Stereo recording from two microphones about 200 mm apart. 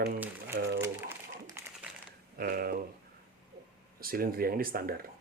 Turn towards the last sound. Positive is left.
turn(degrees=-45)  # may be behind; listen again after turning